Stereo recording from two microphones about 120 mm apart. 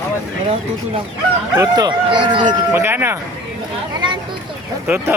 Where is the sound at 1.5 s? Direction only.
35° right (ahead or behind).